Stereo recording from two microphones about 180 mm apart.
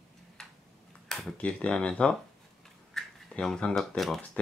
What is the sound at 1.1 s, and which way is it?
Speech, centre (ahead or behind).